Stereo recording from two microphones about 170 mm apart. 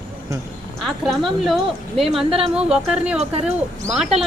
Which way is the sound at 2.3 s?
35° right (ahead or behind).